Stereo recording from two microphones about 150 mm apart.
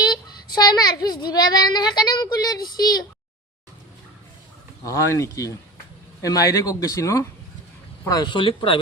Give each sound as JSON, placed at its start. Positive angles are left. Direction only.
{"t": 0.1, "sound": "a child's voice", "side_deg": 25}
{"t": 4.8, "sound": "a child's voice", "side_deg": 20}